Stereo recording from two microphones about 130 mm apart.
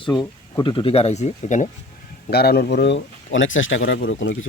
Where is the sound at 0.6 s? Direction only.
40° left (ahead or behind); by 1.6 s 65° left (ahead or behind).